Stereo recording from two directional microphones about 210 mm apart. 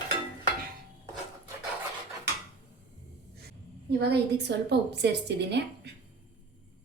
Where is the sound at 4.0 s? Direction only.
50° right (ahead or behind).